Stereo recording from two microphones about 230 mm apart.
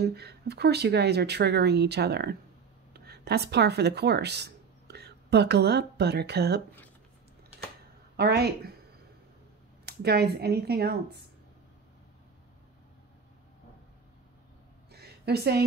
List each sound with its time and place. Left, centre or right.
0.0 s speech: right
8.2 s speech: right
9.8 s speech: right
14.9 s a sound: right